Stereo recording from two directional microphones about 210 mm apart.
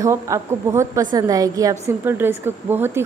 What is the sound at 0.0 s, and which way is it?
A woman's voice, 15° right (ahead or behind).